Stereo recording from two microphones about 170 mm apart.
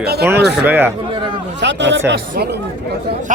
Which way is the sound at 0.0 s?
70° right (ahead or behind).